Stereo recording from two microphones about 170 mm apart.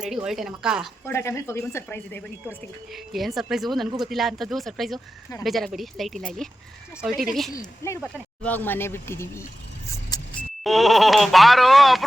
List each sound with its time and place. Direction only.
0.0 s speech: 5° right (ahead or behind)
1.0 s speech: 15° left (ahead or behind)
2.9 s speech: centre (ahead or behind)
7.8 s speech: 15° left (ahead or behind)
10.1 s vehicle: 25° left (ahead or behind)
10.6 s speech: centre (ahead or behind)